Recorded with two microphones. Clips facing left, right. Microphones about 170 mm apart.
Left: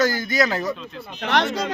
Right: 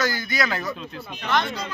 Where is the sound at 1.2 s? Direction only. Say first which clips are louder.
Left 3 dB; 80° left.